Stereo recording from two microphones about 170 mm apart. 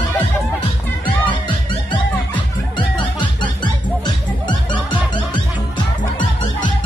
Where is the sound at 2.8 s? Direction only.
30° left (ahead or behind).